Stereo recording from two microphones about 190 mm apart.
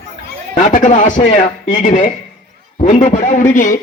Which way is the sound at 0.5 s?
40° left (ahead or behind).